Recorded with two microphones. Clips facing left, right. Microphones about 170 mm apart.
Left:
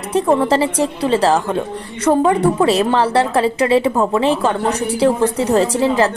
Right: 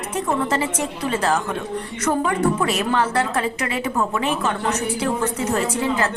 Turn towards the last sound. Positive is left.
turn(degrees=35)  # may be behind; listen again after turning